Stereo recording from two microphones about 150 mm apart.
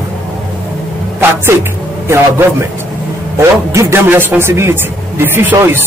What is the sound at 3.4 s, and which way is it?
A man's voice, 15° right (ahead or behind).